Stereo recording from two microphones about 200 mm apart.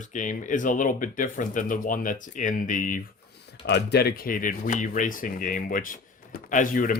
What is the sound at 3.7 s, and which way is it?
Speech, 55° left (ahead or behind).